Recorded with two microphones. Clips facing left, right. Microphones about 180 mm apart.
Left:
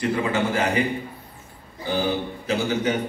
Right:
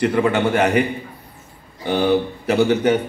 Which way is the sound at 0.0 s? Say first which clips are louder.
Right 6 dB; 65° right (ahead or behind).